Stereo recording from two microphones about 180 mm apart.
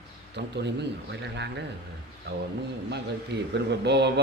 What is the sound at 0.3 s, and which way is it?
A man's voice, 70° right (ahead or behind).